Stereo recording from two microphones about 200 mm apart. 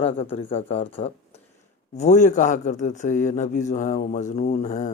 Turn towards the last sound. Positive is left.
turn(degrees=40)  # may be behind; listen again after turning